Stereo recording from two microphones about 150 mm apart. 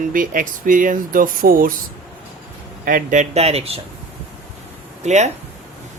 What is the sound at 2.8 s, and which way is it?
Speech, 65° right (ahead or behind).